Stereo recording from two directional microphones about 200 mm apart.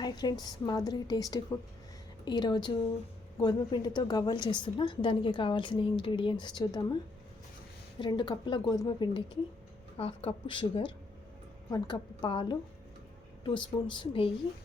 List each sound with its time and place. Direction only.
0.0 s a woman's voice: 20° left (ahead or behind)
7.9 s a woman's voice: 25° left (ahead or behind)